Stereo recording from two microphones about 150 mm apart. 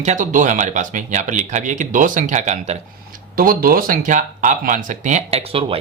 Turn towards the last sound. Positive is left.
turn(degrees=-40)  # may be behind; listen again after turning